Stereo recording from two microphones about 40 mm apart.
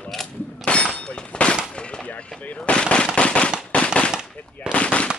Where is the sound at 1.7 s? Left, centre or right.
Left.